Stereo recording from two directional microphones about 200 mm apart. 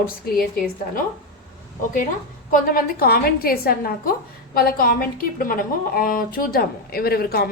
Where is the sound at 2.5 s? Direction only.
45° left (ahead or behind).